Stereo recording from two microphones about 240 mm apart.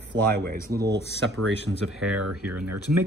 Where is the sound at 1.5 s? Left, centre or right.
Left.